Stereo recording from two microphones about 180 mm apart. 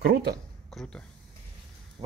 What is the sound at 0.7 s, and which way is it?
Speech, 5° left (ahead or behind).